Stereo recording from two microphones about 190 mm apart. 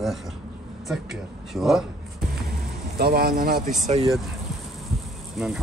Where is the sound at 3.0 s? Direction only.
55° right (ahead or behind).